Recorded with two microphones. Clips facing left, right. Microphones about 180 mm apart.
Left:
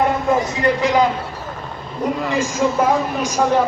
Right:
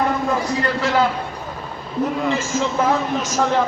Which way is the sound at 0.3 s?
20° left (ahead or behind).